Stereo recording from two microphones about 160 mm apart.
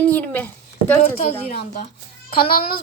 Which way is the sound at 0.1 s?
10° left (ahead or behind).